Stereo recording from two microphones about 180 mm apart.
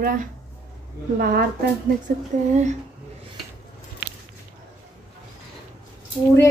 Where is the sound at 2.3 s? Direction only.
45° right (ahead or behind).